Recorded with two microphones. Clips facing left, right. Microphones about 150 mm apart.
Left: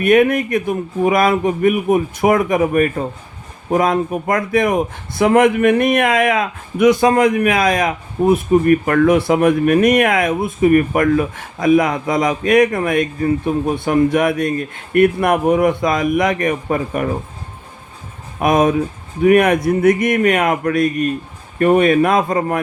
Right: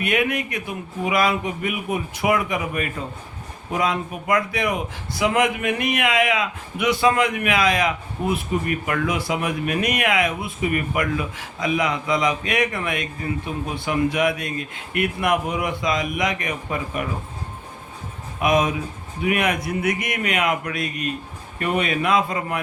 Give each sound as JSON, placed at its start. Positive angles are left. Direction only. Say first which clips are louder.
{"t": 0.0, "sound": "a man's voice", "louder": "left 10 dB", "side_deg": 50}
{"t": 18.3, "sound": "a man's voice", "louder": "left 6 dB", "side_deg": 50}